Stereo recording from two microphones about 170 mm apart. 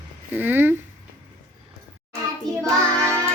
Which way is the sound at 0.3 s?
10° right (ahead or behind).